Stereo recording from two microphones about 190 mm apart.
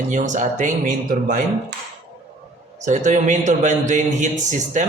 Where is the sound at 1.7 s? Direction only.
60° right (ahead or behind).